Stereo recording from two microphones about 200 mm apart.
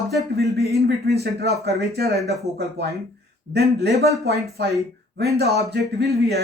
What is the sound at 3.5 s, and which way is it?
Speech, 55° right (ahead or behind).